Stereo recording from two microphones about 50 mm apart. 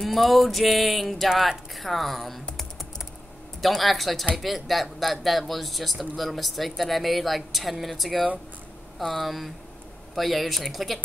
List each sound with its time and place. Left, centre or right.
0.0 s speech: centre
3.6 s speech: centre